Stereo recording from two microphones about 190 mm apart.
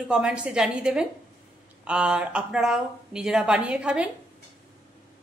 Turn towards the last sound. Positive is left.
turn(degrees=-5)  # may be behind; listen again after turning